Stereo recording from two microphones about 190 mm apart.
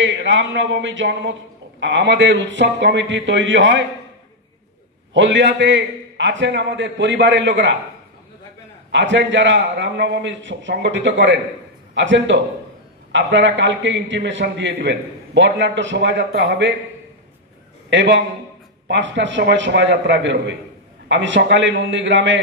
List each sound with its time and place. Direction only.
0.0 s a man's voice: 75° right (ahead or behind)
5.1 s a man's voice: 75° right (ahead or behind)
8.9 s a man's voice: 75° right (ahead or behind)
17.8 s a man's voice: 70° right (ahead or behind)